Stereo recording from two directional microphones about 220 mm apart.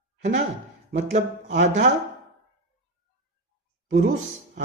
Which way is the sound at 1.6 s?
45° right (ahead or behind).